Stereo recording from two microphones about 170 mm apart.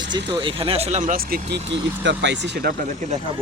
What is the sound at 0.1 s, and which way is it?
Speech, 30° right (ahead or behind).